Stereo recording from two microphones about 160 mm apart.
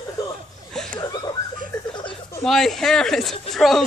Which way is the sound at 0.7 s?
5° left (ahead or behind).